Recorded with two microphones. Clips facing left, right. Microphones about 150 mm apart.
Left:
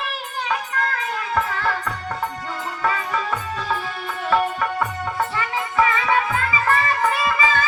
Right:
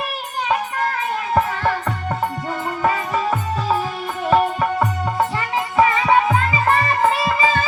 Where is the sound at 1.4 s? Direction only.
35° right (ahead or behind).